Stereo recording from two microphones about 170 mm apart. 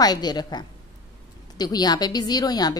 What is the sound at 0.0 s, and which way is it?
A woman's voice, 25° left (ahead or behind).